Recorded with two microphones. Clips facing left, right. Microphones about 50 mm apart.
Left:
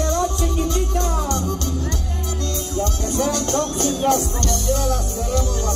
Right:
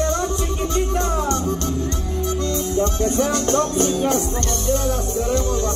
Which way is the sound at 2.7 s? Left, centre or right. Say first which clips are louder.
Right 3 dB; right.